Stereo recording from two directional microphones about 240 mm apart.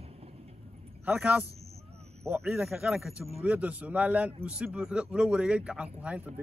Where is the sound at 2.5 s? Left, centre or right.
Centre.